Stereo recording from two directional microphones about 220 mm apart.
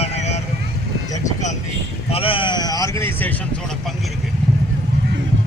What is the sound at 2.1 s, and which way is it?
Vehicle, 25° left (ahead or behind).